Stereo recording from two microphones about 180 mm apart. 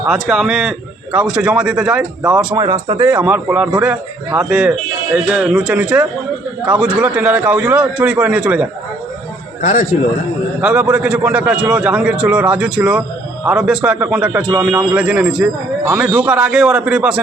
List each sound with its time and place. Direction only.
0.1 s a man's voice: centre (ahead or behind)
2.6 s a man's voice: 20° right (ahead or behind)
9.6 s a man's voice: 40° left (ahead or behind)
10.6 s a man's voice: 5° right (ahead or behind)